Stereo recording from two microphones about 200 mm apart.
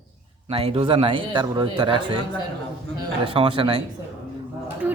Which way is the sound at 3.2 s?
25° right (ahead or behind).